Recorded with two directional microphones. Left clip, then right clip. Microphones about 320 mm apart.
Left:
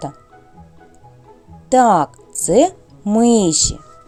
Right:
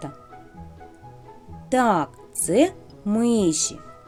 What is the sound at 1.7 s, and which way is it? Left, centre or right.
Speech, centre.